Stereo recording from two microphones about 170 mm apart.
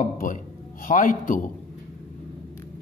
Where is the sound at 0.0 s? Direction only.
50° left (ahead or behind).